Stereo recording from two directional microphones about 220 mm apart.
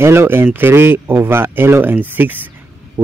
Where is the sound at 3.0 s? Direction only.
15° right (ahead or behind).